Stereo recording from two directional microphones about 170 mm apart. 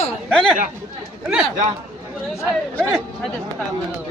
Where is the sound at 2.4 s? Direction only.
5° left (ahead or behind).